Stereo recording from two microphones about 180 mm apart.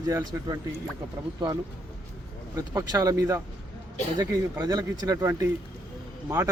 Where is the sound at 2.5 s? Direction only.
20° right (ahead or behind).